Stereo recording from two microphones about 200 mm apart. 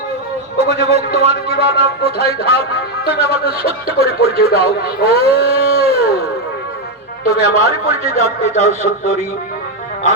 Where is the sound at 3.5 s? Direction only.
30° right (ahead or behind).